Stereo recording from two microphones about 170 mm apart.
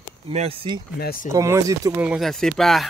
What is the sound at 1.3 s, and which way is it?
Speech, 20° right (ahead or behind).